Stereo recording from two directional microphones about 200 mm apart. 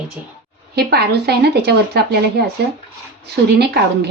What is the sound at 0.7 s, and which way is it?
Speech, 50° right (ahead or behind).